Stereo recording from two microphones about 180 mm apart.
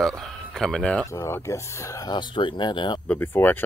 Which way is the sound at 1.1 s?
15° left (ahead or behind).